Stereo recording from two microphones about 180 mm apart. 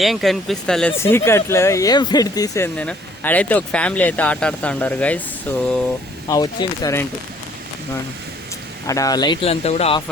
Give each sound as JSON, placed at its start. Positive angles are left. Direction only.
{"t": 0.0, "sound": "speech", "side_deg": 0}
{"t": 0.9, "sound": "speech", "side_deg": 15}
{"t": 2.7, "sound": "speech", "side_deg": 5}
{"t": 6.2, "sound": "speech", "side_deg": 20}
{"t": 8.9, "sound": "speech", "side_deg": 20}